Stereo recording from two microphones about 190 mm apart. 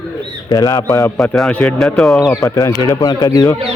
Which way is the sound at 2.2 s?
20° left (ahead or behind).